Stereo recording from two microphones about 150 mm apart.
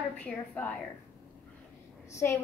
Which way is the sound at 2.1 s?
20° left (ahead or behind).